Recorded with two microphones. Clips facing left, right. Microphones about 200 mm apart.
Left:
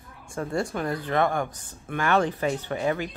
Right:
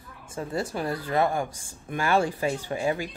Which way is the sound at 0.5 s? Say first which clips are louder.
Left 1 dB; 5° right (ahead or behind).